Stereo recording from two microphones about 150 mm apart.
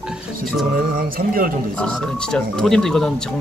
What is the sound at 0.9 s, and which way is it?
Speech, 75° right (ahead or behind).